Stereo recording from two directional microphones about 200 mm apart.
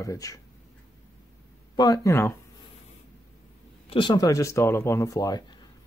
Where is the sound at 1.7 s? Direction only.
20° left (ahead or behind).